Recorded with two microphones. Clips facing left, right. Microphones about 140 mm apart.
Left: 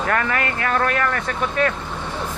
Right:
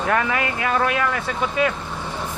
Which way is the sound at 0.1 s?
15° right (ahead or behind).